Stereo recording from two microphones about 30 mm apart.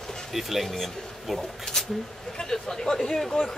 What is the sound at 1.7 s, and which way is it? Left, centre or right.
Speech, centre.